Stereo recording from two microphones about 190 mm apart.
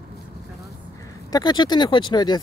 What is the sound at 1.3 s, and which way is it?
Speech, 20° left (ahead or behind).